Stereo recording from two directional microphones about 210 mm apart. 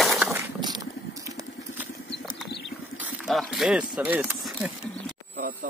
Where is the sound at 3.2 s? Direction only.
Centre (ahead or behind).